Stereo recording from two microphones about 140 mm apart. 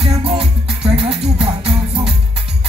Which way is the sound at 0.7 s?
5° right (ahead or behind).